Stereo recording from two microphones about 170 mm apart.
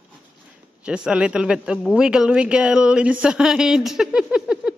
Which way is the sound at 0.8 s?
5° right (ahead or behind).